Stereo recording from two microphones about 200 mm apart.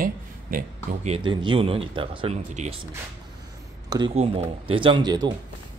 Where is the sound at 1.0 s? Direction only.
25° right (ahead or behind).